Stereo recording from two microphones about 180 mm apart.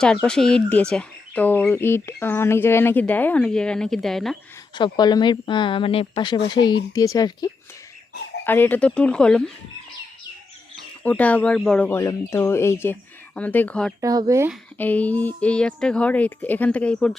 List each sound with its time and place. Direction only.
0.0 s speech: 5° left (ahead or behind)
4.7 s speech: 25° left (ahead or behind); by 9.4 s 5° left (ahead or behind)
11.0 s speech: 10° left (ahead or behind)
14.0 s speech: 20° right (ahead or behind)
14.8 s speech: 10° left (ahead or behind)